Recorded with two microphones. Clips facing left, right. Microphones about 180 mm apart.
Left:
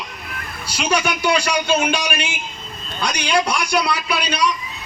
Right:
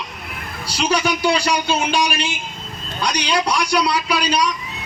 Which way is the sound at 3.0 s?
50° left (ahead or behind).